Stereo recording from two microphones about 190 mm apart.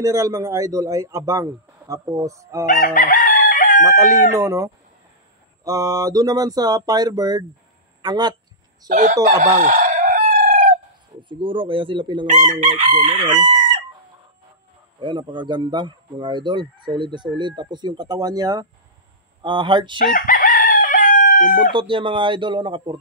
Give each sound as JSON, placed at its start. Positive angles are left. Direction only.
{"t": 0.0, "sound": "speech", "side_deg": -15}
{"t": 2.6, "sound": "chicken", "side_deg": 45}
{"t": 3.8, "sound": "speech", "side_deg": -15}
{"t": 8.8, "sound": "chicken", "side_deg": -40}
{"t": 11.1, "sound": "speech", "side_deg": -25}
{"t": 12.3, "sound": "chicken", "side_deg": -40}
{"t": 13.4, "sound": "chicken", "side_deg": -25}
{"t": 15.0, "sound": "speech", "side_deg": -25}
{"t": 20.0, "sound": "crowing", "side_deg": 45}
{"t": 21.7, "sound": "speech", "side_deg": -25}